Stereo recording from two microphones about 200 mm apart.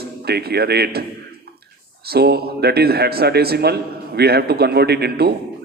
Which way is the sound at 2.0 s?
55° right (ahead or behind).